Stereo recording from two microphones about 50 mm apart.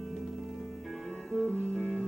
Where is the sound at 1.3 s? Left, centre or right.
Left.